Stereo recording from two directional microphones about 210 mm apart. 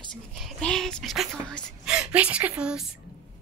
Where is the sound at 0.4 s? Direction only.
Centre (ahead or behind).